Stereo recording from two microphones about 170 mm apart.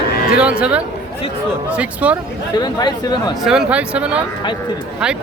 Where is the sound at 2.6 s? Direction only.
25° left (ahead or behind).